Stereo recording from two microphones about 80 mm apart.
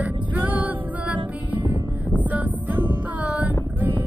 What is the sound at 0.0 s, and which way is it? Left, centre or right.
Music, centre.